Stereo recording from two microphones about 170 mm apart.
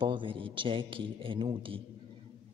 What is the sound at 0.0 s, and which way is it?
A man's voice, 30° right (ahead or behind).